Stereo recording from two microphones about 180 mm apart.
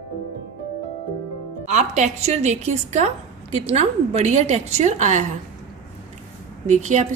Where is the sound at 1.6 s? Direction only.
40° right (ahead or behind).